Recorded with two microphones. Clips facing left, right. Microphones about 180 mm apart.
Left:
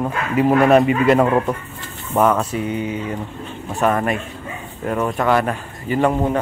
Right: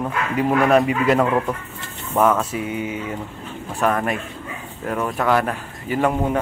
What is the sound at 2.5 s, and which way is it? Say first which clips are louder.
Mantra: left 3 dB; 5° right (ahead or behind).